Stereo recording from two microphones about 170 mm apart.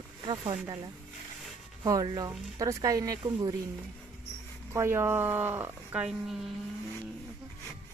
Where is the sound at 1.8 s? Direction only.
20° right (ahead or behind).